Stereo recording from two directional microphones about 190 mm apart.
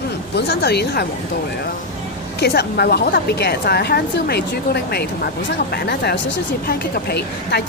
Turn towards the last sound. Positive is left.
turn(degrees=60)  # may be behind; listen again after turning